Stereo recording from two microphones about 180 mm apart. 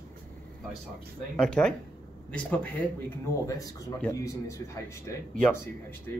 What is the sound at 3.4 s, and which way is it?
Speech, 20° left (ahead or behind).